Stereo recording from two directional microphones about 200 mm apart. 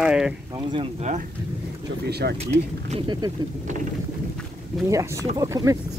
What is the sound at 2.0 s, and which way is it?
Speech, 55° right (ahead or behind).